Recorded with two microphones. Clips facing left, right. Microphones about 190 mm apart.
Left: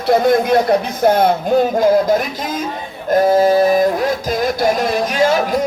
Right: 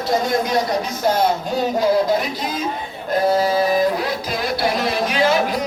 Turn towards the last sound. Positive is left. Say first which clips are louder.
# left 3 dB
turn(degrees=45)  # may be behind; listen again after turning